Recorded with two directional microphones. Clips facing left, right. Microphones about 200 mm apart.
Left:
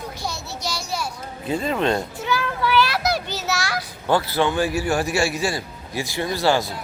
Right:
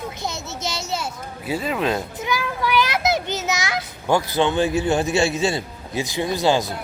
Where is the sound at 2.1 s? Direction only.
15° right (ahead or behind).